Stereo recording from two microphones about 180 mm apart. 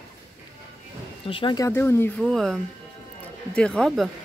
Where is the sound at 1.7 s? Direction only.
10° left (ahead or behind).